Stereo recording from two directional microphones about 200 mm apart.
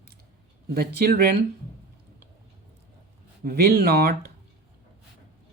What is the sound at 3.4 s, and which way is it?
Speech, 50° right (ahead or behind).